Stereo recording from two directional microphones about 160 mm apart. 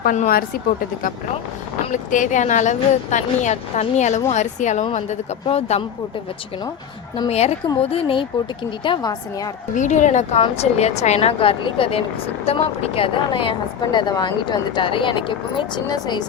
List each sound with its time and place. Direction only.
0.0 s a woman's voice: 60° left (ahead or behind); by 5.8 s 40° left (ahead or behind)
7.3 s a woman's voice: 40° left (ahead or behind); by 9.5 s 25° left (ahead or behind)
9.7 s a woman's voice: 50° left (ahead or behind); by 16.2 s 25° left (ahead or behind)